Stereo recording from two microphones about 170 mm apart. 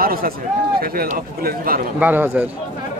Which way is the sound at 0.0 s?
60° right (ahead or behind).